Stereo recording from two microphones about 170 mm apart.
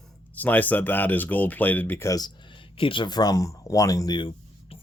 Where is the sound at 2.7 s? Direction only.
30° left (ahead or behind).